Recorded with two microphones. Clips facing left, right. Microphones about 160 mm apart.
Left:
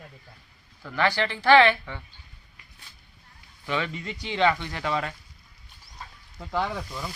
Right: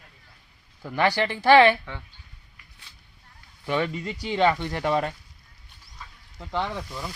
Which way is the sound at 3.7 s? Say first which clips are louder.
Right 4 dB; 40° right (ahead or behind).